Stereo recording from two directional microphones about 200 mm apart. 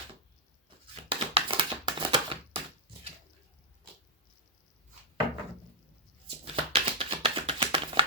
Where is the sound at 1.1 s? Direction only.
25° right (ahead or behind).